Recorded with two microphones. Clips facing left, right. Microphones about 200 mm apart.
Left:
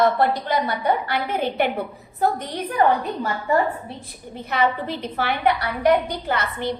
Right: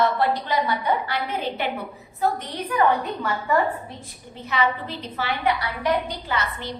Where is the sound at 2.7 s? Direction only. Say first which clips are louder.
Left 1 dB; 30° left (ahead or behind).